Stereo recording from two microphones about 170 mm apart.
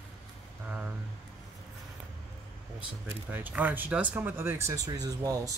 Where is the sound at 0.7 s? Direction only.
5° right (ahead or behind).